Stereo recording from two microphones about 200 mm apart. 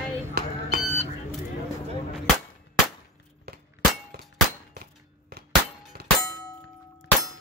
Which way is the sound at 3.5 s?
50° right (ahead or behind).